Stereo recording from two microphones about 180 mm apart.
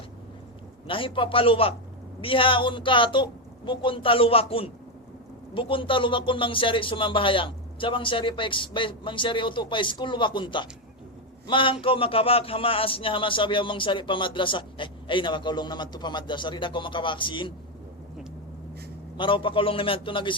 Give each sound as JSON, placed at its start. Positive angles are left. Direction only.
{"t": 0.9, "sound": "a man's voice", "side_deg": 30}
{"t": 19.1, "sound": "a man's voice", "side_deg": 25}